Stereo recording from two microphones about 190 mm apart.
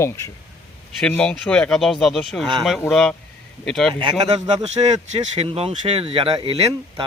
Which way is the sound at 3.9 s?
25° right (ahead or behind).